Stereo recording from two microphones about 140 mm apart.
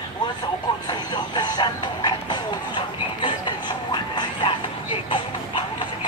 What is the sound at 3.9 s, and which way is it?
Vehicle, 35° left (ahead or behind).